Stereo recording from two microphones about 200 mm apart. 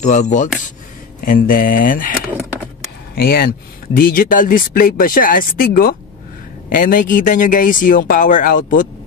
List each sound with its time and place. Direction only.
0.0 s speech: 35° left (ahead or behind)
3.2 s speech: 50° left (ahead or behind)